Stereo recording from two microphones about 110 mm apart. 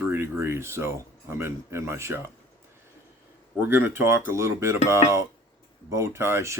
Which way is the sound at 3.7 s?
20° right (ahead or behind).